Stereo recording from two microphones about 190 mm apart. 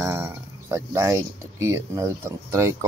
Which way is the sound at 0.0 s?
15° right (ahead or behind).